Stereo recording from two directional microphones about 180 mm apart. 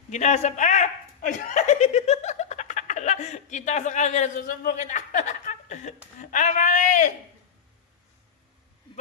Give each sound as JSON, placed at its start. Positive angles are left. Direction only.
{"t": 0.1, "sound": "a man's voice", "side_deg": 40}